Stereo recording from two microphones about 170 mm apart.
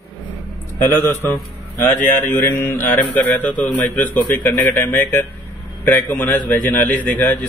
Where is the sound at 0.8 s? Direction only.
10° left (ahead or behind).